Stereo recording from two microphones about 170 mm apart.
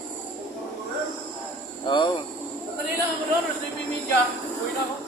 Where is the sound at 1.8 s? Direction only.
30° left (ahead or behind).